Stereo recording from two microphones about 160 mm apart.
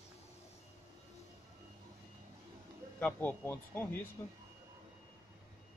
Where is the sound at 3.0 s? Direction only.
10° left (ahead or behind).